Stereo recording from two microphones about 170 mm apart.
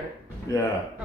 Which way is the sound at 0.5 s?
20° left (ahead or behind).